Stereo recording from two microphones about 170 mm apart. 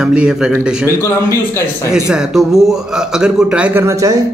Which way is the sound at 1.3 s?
15° left (ahead or behind).